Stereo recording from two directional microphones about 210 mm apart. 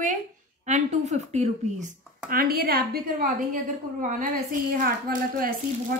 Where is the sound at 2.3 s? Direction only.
45° right (ahead or behind).